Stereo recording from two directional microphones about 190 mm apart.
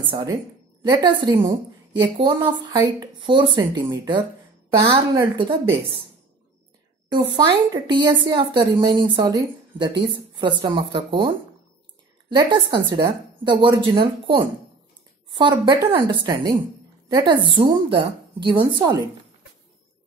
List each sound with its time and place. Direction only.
0.0 s a woman's voice: 25° right (ahead or behind)
7.3 s a woman's voice: 20° right (ahead or behind)